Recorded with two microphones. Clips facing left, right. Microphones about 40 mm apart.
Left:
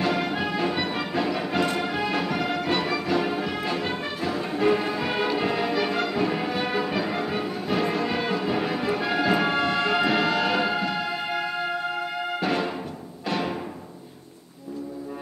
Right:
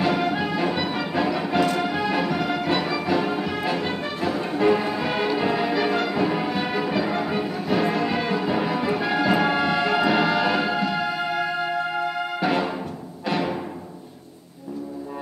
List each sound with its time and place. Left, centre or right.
0.0 s music: centre
13.3 s timpani: centre